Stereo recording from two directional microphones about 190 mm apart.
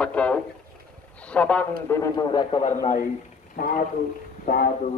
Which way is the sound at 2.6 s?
35° left (ahead or behind).